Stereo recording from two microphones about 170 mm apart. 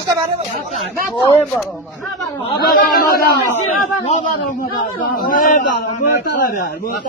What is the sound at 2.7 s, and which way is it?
Speech, 60° left (ahead or behind).